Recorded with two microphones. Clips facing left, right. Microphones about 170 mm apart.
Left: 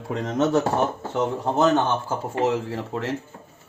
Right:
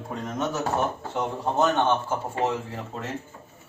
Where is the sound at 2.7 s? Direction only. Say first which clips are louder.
Left 6 dB; 90° left.